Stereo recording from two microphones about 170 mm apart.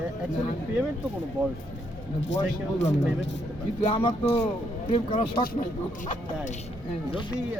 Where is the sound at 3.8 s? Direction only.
35° left (ahead or behind).